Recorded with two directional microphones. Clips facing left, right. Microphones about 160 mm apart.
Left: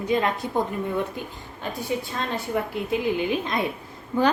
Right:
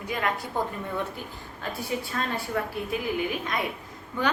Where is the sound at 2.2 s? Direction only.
20° left (ahead or behind).